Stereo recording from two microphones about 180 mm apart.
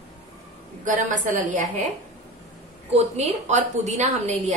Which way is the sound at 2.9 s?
40° right (ahead or behind).